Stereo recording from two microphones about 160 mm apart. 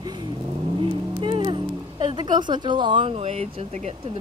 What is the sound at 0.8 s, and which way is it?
Music, 30° right (ahead or behind).